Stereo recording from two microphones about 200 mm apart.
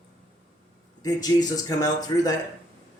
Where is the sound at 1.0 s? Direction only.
20° left (ahead or behind).